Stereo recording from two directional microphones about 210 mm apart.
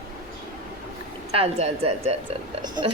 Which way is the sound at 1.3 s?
30° right (ahead or behind).